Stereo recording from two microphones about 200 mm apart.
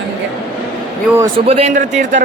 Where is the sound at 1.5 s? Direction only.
30° right (ahead or behind).